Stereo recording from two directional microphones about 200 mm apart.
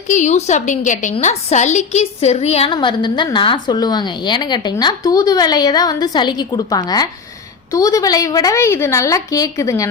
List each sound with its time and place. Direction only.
0.1 s a woman's voice: 35° left (ahead or behind); by 9.9 s 15° left (ahead or behind)